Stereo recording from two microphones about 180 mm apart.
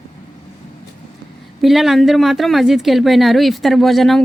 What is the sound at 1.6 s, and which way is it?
Speech, centre (ahead or behind).